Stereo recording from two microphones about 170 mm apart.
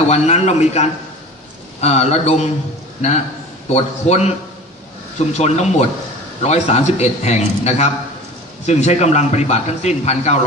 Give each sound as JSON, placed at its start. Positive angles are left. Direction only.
{"t": 0.1, "sound": "a man's voice", "side_deg": 40}
{"t": 5.4, "sound": "a man's voice", "side_deg": 40}